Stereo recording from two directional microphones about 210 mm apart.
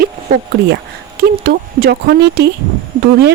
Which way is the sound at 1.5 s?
45° right (ahead or behind).